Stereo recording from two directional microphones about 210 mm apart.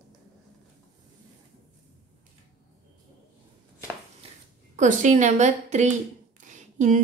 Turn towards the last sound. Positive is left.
turn(degrees=-35)  # may be behind; listen again after turning